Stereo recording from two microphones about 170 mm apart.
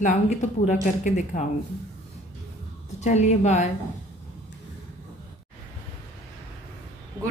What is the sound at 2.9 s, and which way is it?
Speech, 40° left (ahead or behind).